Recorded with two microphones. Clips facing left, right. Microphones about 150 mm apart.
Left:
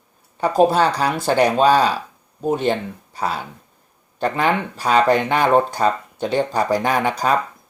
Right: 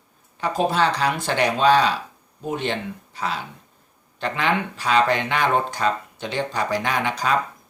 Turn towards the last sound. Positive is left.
turn(degrees=40)  # may be behind; listen again after turning